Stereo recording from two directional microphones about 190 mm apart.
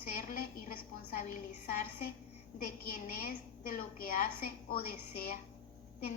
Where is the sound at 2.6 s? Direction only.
50° left (ahead or behind).